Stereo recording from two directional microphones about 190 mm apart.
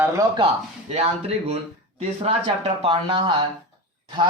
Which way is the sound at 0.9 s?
30° right (ahead or behind).